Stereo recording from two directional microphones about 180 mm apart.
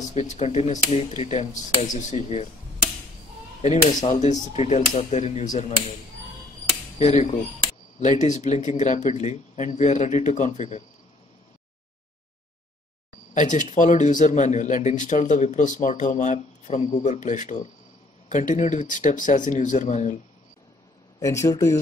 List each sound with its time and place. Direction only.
0.1 s speech: 40° left (ahead or behind)
3.6 s speech: 40° left (ahead or behind)
7.0 s speech: 40° left (ahead or behind)
13.3 s speech: 45° left (ahead or behind)
21.2 s speech: 15° left (ahead or behind)